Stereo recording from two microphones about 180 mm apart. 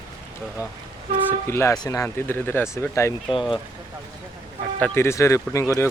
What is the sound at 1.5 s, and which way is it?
Speech, 15° left (ahead or behind).